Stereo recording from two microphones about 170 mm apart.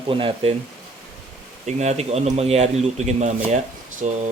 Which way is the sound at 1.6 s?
40° right (ahead or behind).